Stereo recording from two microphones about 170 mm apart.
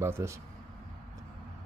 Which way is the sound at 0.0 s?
15° right (ahead or behind).